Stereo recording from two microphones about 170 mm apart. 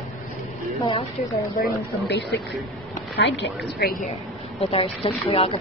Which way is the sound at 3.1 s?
90° left.